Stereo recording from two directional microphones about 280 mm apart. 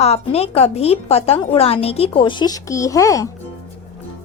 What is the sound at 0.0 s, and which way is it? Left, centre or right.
A woman's voice, left.